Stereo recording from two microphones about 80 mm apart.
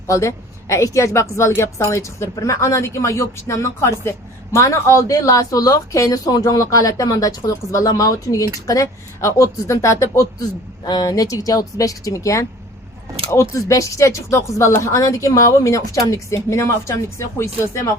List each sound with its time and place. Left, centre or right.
0.1 s a woman's voice: left
10.8 s a woman's voice: left